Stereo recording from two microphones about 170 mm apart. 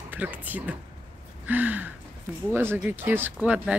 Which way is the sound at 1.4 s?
10° right (ahead or behind).